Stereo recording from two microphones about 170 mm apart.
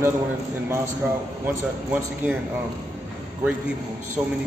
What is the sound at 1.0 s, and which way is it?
Speech, 10° right (ahead or behind).